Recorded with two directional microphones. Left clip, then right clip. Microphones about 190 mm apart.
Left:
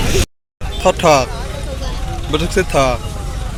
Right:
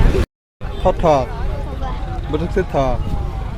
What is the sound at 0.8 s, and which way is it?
Speech, 5° right (ahead or behind).